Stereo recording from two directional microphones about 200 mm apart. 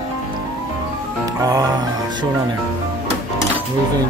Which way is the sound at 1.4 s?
15° right (ahead or behind).